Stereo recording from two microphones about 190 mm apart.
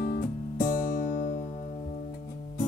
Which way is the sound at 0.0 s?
50° left (ahead or behind).